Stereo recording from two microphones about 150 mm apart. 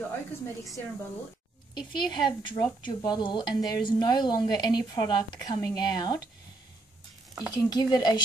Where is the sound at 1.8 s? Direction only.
30° left (ahead or behind).